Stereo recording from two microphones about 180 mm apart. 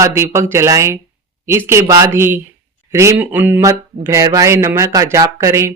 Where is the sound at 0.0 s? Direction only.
15° right (ahead or behind).